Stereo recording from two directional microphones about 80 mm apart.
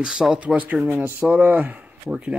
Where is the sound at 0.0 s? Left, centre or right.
Centre.